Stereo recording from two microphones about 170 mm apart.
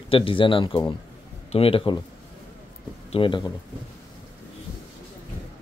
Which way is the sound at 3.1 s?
30° left (ahead or behind).